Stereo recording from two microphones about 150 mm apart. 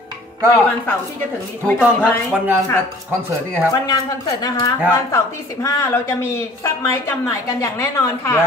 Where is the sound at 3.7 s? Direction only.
25° left (ahead or behind).